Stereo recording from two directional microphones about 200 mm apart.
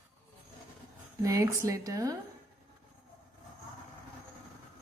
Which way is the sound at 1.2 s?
15° right (ahead or behind).